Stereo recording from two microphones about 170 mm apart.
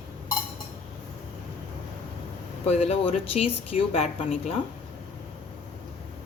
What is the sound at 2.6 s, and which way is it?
Speech, 40° left (ahead or behind).